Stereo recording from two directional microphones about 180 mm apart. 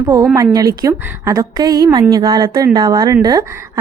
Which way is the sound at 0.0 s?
20° right (ahead or behind).